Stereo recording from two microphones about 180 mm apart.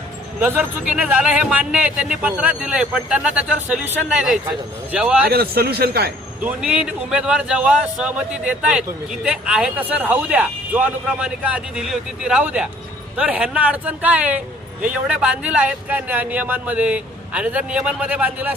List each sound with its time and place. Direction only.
0.3 s a man's voice: 10° right (ahead or behind)
4.9 s a man's voice: 5° right (ahead or behind)
5.2 s speech: 60° right (ahead or behind)
6.4 s a man's voice: 5° right (ahead or behind)